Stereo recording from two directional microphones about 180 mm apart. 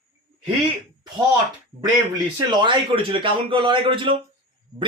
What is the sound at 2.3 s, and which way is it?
Speech, 25° right (ahead or behind).